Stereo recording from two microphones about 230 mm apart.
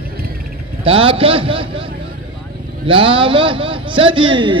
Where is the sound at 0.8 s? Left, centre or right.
Right.